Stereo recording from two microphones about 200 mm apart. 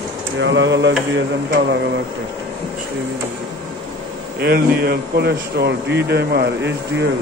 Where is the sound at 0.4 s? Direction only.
65° right (ahead or behind).